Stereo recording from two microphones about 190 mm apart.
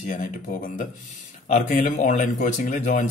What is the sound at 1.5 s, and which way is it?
A man's voice, 40° left (ahead or behind).